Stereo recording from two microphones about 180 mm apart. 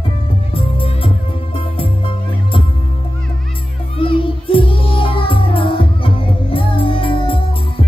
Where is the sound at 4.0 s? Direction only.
30° left (ahead or behind).